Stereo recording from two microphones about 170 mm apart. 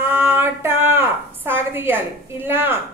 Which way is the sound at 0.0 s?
15° right (ahead or behind).